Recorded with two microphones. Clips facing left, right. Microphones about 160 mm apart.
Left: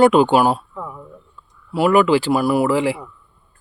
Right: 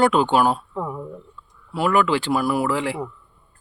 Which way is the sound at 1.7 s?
5° left (ahead or behind).